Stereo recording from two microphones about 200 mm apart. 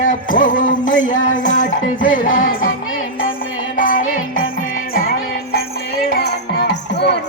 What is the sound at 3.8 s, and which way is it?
Music, 45° left (ahead or behind).